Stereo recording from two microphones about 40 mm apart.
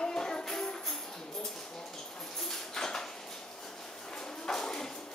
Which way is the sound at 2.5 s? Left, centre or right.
Centre.